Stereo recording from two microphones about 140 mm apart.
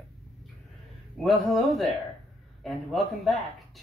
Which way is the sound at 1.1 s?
Centre (ahead or behind).